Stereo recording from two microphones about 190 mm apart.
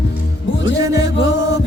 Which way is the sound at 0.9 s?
15° right (ahead or behind).